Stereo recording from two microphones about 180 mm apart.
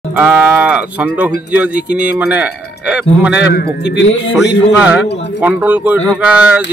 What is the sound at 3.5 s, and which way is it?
Speech, 60° left (ahead or behind).